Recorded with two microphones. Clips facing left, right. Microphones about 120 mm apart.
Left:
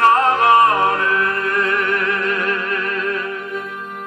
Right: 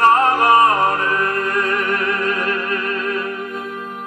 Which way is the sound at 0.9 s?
35° right (ahead or behind).